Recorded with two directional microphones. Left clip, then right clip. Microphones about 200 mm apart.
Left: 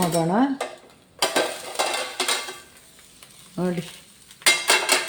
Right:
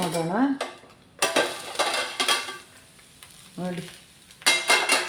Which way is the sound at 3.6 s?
60° left (ahead or behind).